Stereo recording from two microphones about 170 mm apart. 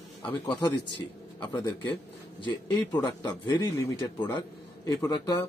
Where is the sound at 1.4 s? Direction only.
25° left (ahead or behind).